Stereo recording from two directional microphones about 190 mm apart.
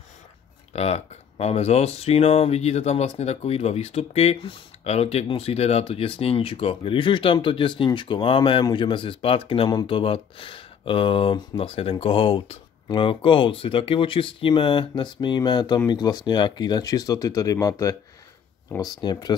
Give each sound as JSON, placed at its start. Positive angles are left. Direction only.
{"t": 0.7, "sound": "speech", "side_deg": 35}